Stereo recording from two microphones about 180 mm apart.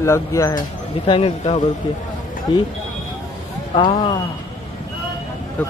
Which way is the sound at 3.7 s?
25° left (ahead or behind).